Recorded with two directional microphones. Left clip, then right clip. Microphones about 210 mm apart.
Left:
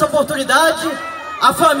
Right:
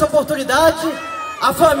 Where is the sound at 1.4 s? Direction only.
30° right (ahead or behind).